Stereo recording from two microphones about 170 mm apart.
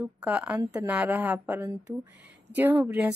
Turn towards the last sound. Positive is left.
turn(degrees=-5)  # may be behind; listen again after turning